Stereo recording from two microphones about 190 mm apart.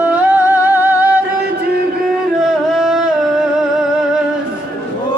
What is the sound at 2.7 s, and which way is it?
Music, 5° right (ahead or behind).